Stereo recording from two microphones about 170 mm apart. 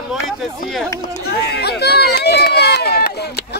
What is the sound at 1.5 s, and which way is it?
Run, 75° left (ahead or behind).